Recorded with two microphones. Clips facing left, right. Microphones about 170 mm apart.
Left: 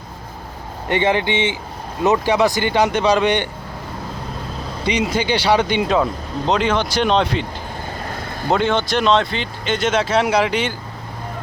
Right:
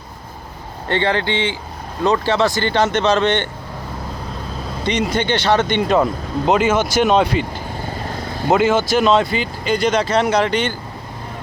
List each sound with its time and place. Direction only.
0.9 s speech: 15° left (ahead or behind)
4.9 s speech: 10° left (ahead or behind)
8.4 s speech: 5° right (ahead or behind)